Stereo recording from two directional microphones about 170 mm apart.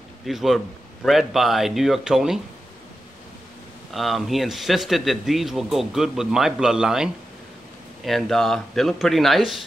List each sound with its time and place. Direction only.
0.2 s a man's voice: centre (ahead or behind)
3.9 s speech: centre (ahead or behind)